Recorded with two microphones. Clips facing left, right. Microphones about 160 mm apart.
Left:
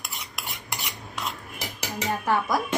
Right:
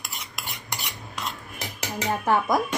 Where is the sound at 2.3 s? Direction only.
20° right (ahead or behind).